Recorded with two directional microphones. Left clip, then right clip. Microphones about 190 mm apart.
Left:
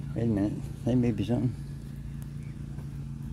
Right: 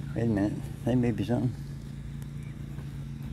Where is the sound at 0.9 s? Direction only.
10° right (ahead or behind).